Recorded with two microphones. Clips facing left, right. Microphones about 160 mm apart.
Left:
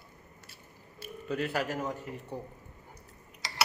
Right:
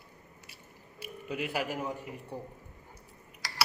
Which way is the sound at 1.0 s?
10° right (ahead or behind).